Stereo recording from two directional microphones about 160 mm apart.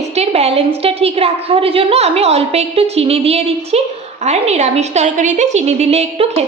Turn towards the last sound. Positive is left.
turn(degrees=-40)  # may be behind; listen again after turning